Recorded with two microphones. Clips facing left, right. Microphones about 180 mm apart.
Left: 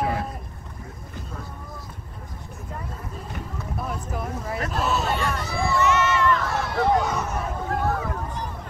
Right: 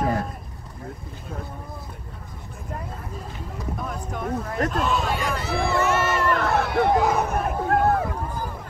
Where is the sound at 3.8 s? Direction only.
5° left (ahead or behind).